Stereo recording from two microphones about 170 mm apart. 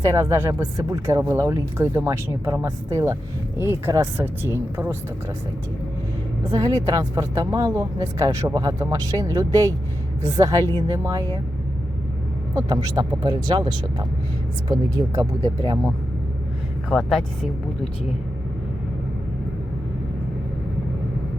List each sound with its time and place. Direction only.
0.0 s speech: 20° right (ahead or behind)
6.5 s speech: 20° right (ahead or behind)
12.5 s speech: 25° right (ahead or behind)
16.9 s speech: centre (ahead or behind)